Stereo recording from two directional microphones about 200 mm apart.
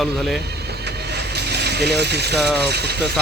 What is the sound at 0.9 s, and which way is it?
Vehicle, 55° right (ahead or behind).